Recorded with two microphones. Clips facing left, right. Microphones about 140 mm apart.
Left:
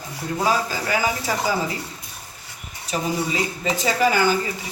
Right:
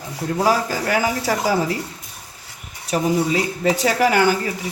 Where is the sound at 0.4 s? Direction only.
65° right (ahead or behind).